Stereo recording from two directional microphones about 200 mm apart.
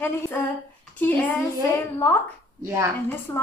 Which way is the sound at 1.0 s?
10° left (ahead or behind).